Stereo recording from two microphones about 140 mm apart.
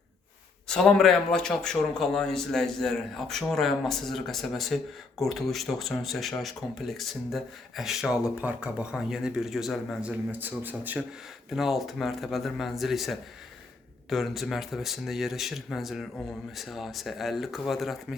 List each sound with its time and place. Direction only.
0.7 s a man's voice: 5° left (ahead or behind); by 11.0 s 15° right (ahead or behind)
11.5 s a man's voice: centre (ahead or behind)